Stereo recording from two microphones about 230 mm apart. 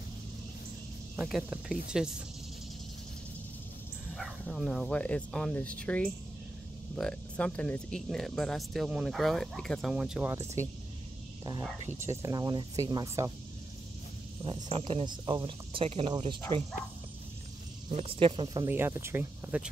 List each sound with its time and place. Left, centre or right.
1.1 s speech: centre
4.1 s speech: centre
12.2 s speech: centre
14.4 s speech: right
17.9 s speech: right; by 19.7 s centre